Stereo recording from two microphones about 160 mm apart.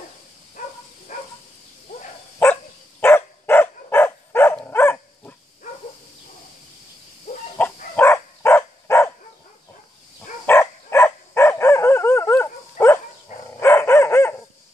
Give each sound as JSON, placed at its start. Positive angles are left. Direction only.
{"t": 2.3, "sound": "dog", "side_deg": 15}
{"t": 7.5, "sound": "a sound", "side_deg": 10}
{"t": 10.4, "sound": "dog", "side_deg": 15}